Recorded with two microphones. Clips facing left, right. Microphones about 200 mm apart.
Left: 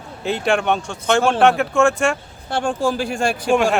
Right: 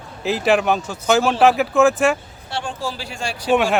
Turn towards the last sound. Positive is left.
turn(degrees=0)  # may be behind; listen again after turning